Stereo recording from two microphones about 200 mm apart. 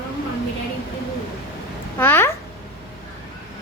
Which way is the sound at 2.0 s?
10° left (ahead or behind).